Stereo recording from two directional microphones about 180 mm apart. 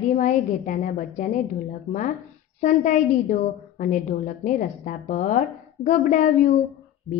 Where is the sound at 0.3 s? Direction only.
45° left (ahead or behind).